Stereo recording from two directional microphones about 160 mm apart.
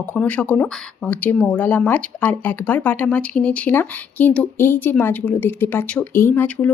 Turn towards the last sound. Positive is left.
turn(degrees=10)  # may be behind; listen again after turning